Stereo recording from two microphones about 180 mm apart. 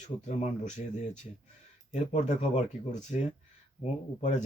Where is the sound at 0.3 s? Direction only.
40° left (ahead or behind).